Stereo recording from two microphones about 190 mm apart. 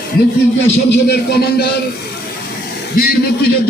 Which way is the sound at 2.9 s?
50° left (ahead or behind).